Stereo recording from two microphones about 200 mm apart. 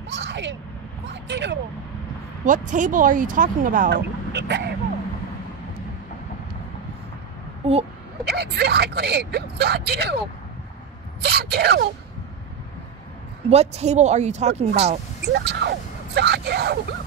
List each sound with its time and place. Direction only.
0.1 s speech: 60° right (ahead or behind)
2.4 s speech: 40° right (ahead or behind)
3.9 s speech: 60° right (ahead or behind)
8.3 s speech: 55° right (ahead or behind)
11.2 s speech: 55° right (ahead or behind)
13.5 s speech: 35° right (ahead or behind)
15.2 s speech: 55° right (ahead or behind)